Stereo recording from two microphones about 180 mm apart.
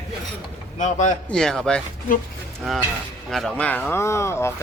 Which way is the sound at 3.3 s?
Centre (ahead or behind).